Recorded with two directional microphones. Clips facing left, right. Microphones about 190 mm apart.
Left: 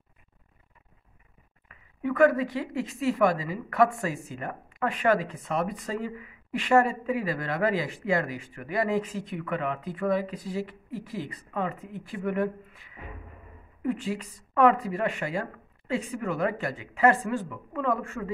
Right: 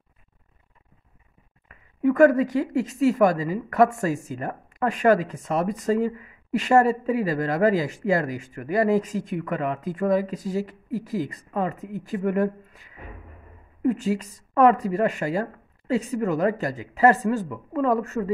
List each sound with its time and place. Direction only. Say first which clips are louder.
1.7 s speech: right 8 dB; 45° right (ahead or behind)